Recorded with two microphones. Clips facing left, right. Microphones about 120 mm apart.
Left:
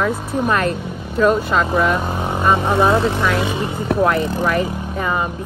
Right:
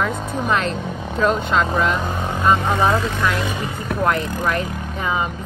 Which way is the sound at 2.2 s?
15° left (ahead or behind).